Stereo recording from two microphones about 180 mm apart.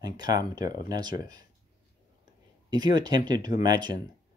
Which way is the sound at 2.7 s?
25° right (ahead or behind).